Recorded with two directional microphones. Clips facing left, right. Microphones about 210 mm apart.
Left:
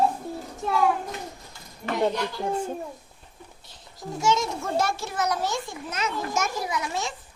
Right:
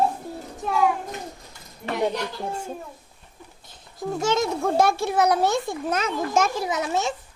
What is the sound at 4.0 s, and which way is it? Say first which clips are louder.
A child's voice: right 2 dB; 55° right (ahead or behind).